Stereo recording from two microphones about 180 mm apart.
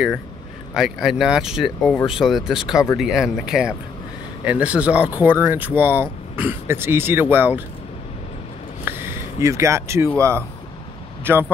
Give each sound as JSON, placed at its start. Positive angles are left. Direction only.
{"t": 0.7, "sound": "speech", "side_deg": 0}
{"t": 8.8, "sound": "speech", "side_deg": -10}